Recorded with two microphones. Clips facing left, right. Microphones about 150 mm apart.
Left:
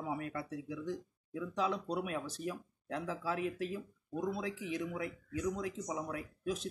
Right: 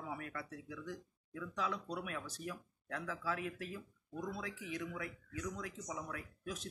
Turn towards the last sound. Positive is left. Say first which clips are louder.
# left 7 dB
turn(degrees=25)  # may be behind; listen again after turning